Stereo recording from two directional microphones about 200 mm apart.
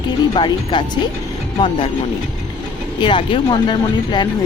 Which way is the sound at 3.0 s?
25° left (ahead or behind).